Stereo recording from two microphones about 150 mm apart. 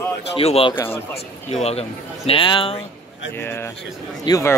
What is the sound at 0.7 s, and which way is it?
Speech, 15° left (ahead or behind).